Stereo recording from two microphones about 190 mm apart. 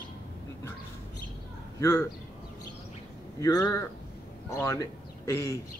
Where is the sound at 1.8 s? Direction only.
15° left (ahead or behind).